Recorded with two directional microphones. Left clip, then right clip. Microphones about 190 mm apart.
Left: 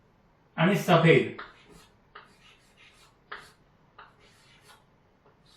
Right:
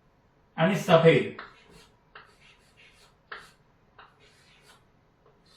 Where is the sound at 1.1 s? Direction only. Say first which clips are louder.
Right 1 dB; centre (ahead or behind).